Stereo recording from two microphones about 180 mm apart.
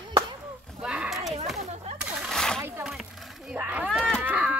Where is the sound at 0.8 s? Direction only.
5° right (ahead or behind).